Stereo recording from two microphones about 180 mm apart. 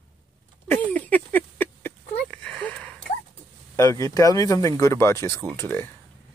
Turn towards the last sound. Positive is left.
turn(degrees=10)  # may be behind; listen again after turning